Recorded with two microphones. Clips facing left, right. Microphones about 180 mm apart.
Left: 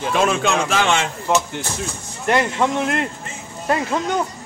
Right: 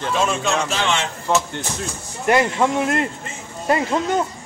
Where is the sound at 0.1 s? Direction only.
60° left (ahead or behind).